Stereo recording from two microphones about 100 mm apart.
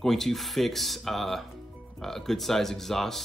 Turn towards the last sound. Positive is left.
turn(degrees=5)  # may be behind; listen again after turning